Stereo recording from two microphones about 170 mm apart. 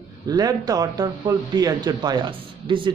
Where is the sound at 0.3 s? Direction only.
20° right (ahead or behind).